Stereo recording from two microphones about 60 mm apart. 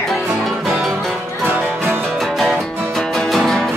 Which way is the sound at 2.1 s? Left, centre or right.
Centre.